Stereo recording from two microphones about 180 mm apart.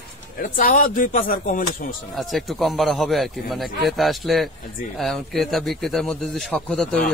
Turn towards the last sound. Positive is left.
turn(degrees=5)  # may be behind; listen again after turning